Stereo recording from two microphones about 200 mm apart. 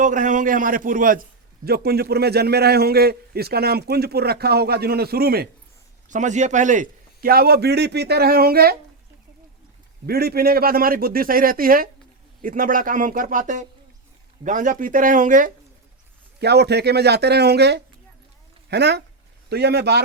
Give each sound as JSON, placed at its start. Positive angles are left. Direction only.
{"t": 0.0, "sound": "a man's voice", "side_deg": -40}
{"t": 6.1, "sound": "a man's voice", "side_deg": -35}
{"t": 10.1, "sound": "a man's voice", "side_deg": -50}
{"t": 16.4, "sound": "speech", "side_deg": -55}